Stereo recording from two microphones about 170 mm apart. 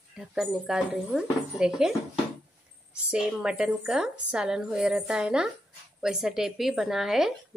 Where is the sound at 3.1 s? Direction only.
5° right (ahead or behind).